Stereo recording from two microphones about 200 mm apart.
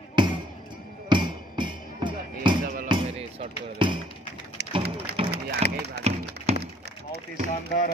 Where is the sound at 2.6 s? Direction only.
45° right (ahead or behind).